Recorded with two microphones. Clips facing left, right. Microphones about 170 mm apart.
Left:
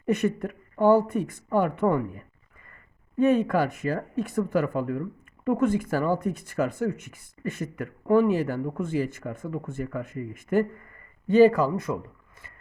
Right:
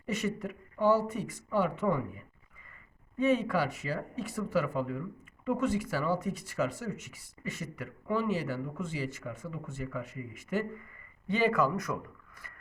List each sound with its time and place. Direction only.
0.0 s a woman's voice: 55° left (ahead or behind); by 11.9 s 30° left (ahead or behind)